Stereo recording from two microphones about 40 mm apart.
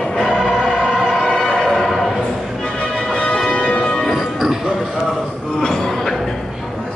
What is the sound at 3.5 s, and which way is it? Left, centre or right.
Music, left.